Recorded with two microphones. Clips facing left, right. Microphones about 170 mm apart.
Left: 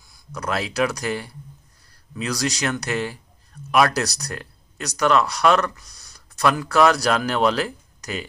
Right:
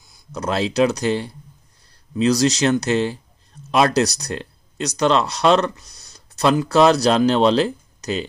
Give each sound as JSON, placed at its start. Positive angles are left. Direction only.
{"t": 0.1, "sound": "speech", "side_deg": -25}